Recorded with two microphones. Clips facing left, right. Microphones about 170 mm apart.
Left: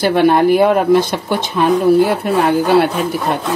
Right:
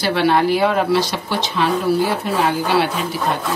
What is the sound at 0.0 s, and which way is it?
Speech, 50° left (ahead or behind).